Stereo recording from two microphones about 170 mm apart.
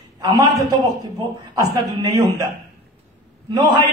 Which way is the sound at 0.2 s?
20° right (ahead or behind).